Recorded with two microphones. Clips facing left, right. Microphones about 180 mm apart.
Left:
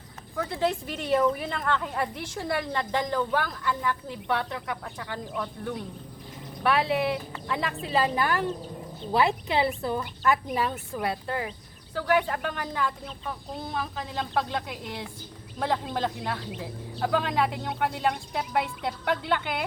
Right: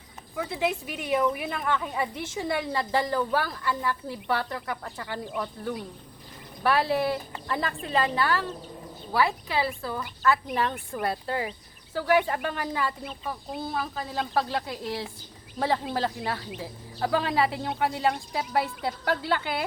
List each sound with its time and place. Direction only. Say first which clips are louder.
0.3 s a woman's voice: left 1 dB; 10° right (ahead or behind); by 10.8 s 10° left (ahead or behind)
10.9 s a woman's voice: right 2 dB; centre (ahead or behind)